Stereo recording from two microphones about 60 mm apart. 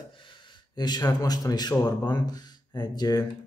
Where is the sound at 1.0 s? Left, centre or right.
Left.